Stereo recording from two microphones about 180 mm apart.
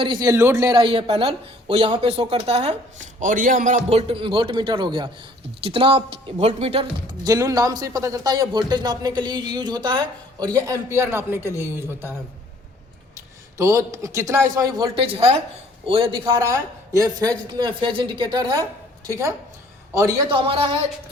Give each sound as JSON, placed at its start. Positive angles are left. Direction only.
{"t": 0.0, "sound": "speech", "side_deg": -25}
{"t": 3.2, "sound": "a man's voice", "side_deg": -50}
{"t": 3.8, "sound": "speech", "side_deg": -35}
{"t": 7.3, "sound": "a man's voice", "side_deg": -20}
{"t": 13.1, "sound": "a man's voice", "side_deg": -15}
{"t": 15.0, "sound": "speech", "side_deg": -35}
{"t": 16.2, "sound": "a man's voice", "side_deg": -15}
{"t": 20.3, "sound": "speech", "side_deg": -30}